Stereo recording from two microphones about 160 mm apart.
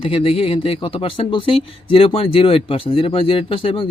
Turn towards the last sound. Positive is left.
turn(degrees=35)  # may be behind; listen again after turning